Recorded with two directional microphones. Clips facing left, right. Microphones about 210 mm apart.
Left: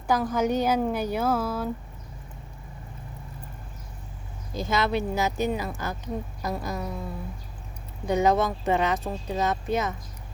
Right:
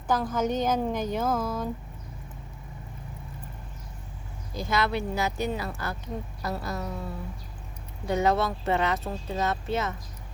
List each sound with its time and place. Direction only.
0.1 s speech: 10° left (ahead or behind)
4.5 s speech: 20° left (ahead or behind)
8.0 s speech: 20° left (ahead or behind)